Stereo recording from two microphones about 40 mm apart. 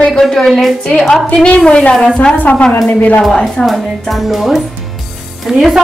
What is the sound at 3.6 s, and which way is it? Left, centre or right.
Speech, centre.